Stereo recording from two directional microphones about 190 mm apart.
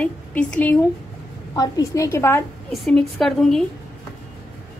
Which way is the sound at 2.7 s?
Centre (ahead or behind).